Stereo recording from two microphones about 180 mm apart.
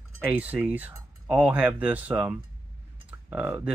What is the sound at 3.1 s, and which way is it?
Speech, 10° right (ahead or behind).